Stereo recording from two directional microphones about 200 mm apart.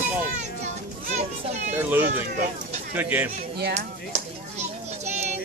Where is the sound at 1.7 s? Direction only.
10° right (ahead or behind).